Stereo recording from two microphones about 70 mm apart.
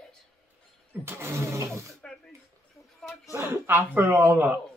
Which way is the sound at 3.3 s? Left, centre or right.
Right.